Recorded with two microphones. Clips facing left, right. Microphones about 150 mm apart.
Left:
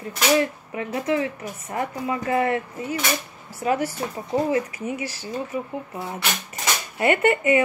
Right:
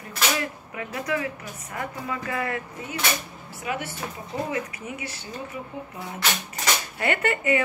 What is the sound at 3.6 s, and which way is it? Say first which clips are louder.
Speech: left 8 dB; 40° left (ahead or behind).